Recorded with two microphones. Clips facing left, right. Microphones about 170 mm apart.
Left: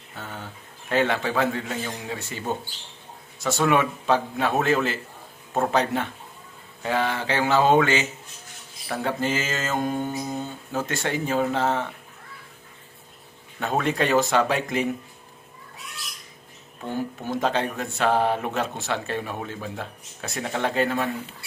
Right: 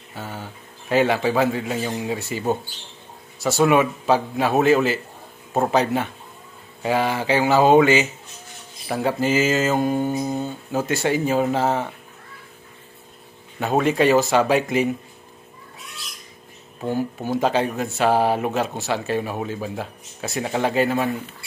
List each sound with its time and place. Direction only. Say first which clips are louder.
0.1 s a man's voice: right 4 dB; 5° right (ahead or behind)
13.6 s speech: right 5 dB; 5° right (ahead or behind)
16.9 s speech: right 4 dB; 5° right (ahead or behind)